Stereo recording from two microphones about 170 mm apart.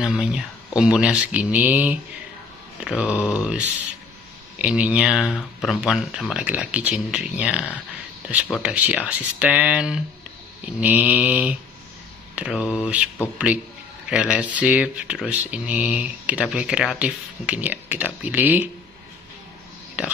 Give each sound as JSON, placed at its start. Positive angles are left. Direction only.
{"t": 0.0, "sound": "speech", "side_deg": -5}
{"t": 20.0, "sound": "speech", "side_deg": -5}